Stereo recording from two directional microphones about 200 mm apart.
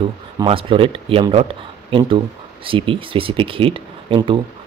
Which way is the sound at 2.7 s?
25° right (ahead or behind).